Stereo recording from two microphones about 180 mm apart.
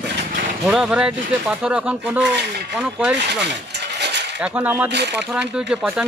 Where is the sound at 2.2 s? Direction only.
70° right (ahead or behind).